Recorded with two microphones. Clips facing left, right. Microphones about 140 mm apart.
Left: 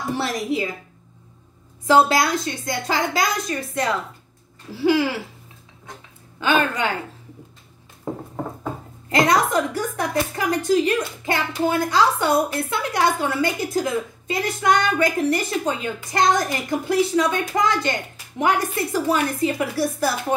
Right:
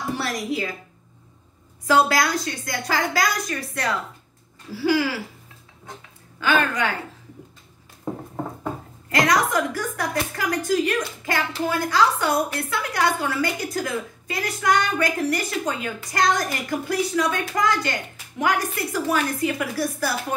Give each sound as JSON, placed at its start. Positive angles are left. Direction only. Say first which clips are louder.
{"t": 0.1, "sound": "a woman's voice", "louder": "left 3 dB", "side_deg": 25}
{"t": 1.9, "sound": "a woman's voice", "louder": "left 3 dB", "side_deg": 25}
{"t": 6.4, "sound": "a woman's voice", "louder": "left 1 dB", "side_deg": 25}
{"t": 9.1, "sound": "a woman's voice", "louder": "left 2 dB", "side_deg": 25}